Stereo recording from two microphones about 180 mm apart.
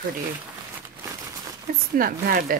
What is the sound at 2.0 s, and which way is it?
Speech, 55° right (ahead or behind).